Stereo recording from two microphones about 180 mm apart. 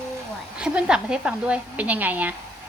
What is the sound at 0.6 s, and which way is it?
Speech, 5° right (ahead or behind).